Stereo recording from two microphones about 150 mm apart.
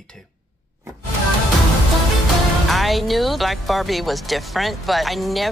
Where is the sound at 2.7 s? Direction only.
Centre (ahead or behind).